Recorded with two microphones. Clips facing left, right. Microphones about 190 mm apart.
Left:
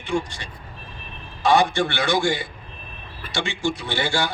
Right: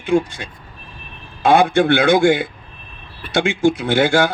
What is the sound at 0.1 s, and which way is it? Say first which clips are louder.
A man's voice: right 8 dB; 55° right (ahead or behind).